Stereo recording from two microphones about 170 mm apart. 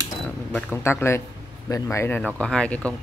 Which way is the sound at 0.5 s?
10° left (ahead or behind).